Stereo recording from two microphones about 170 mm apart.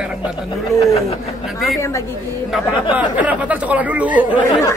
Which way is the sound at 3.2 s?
10° right (ahead or behind).